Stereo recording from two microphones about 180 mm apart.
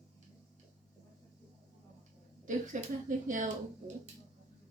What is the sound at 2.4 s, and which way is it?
Speech, 45° right (ahead or behind).